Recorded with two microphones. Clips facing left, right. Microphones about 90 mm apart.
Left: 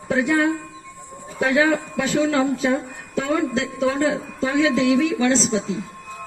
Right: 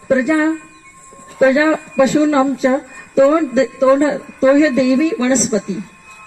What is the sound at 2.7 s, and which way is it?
Speech, 60° right (ahead or behind).